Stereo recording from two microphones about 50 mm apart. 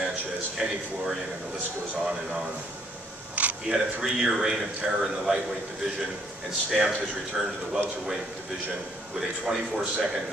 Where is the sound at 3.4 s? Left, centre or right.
Right.